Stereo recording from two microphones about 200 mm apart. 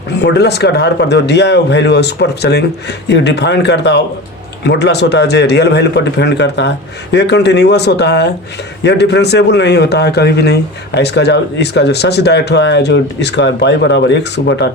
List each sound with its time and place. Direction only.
0.2 s a man's voice: 55° left (ahead or behind)